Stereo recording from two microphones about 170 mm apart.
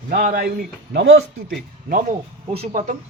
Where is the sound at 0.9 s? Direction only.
90° right.